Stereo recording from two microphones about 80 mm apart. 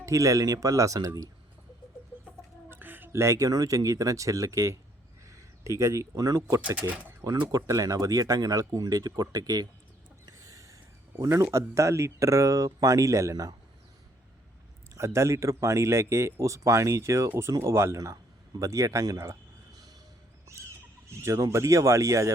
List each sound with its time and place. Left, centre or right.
0.0 s speech: right
2.6 s speech: right
5.2 s a sound: right
6.1 s speech: right
6.7 s speech: centre
7.5 s speech: right
10.2 s a sound: right
11.5 s speech: right
14.9 s speech: right
21.1 s speech: right